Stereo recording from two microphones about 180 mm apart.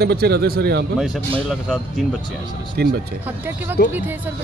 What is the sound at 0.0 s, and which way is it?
Speech, 60° right (ahead or behind).